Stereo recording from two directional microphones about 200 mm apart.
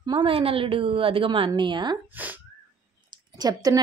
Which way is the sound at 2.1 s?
10° right (ahead or behind).